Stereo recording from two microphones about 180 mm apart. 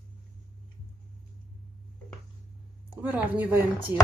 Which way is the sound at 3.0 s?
10° right (ahead or behind).